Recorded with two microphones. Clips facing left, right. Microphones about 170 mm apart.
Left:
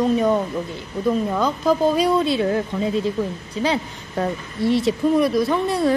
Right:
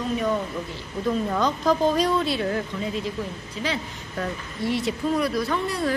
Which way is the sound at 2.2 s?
25° left (ahead or behind).